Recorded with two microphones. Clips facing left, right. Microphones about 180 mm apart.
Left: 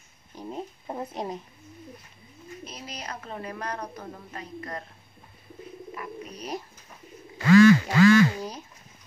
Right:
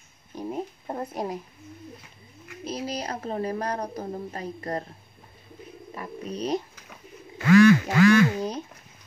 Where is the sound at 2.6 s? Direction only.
35° right (ahead or behind).